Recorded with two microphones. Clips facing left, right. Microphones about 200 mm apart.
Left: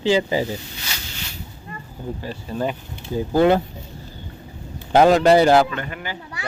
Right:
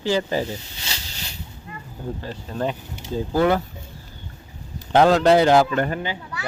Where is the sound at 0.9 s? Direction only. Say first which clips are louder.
Right 1 dB; 25° right (ahead or behind).